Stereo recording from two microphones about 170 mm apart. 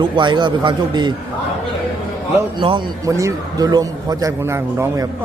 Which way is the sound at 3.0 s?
20° right (ahead or behind).